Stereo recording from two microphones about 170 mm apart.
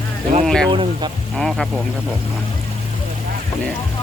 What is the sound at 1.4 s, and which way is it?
Speech, centre (ahead or behind).